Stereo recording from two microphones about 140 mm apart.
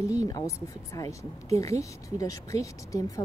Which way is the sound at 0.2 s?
25° left (ahead or behind).